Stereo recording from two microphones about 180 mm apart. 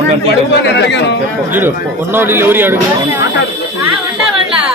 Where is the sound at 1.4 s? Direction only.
10° right (ahead or behind).